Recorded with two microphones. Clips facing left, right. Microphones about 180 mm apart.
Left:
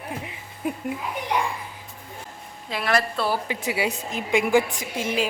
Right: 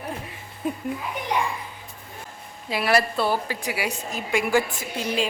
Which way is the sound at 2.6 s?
5° right (ahead or behind).